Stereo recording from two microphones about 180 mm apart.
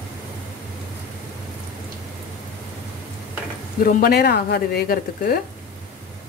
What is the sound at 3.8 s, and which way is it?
Speech, 55° left (ahead or behind).